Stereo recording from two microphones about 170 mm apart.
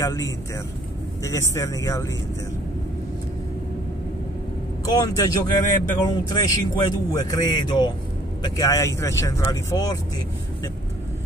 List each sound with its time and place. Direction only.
0.0 s speech: 20° left (ahead or behind)
4.8 s speech: 20° left (ahead or behind)